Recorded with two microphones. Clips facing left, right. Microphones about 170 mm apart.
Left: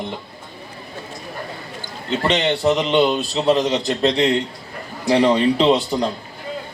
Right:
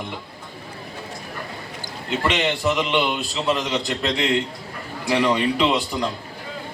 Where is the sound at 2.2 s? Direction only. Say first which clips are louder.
Left 3 dB; 30° left (ahead or behind).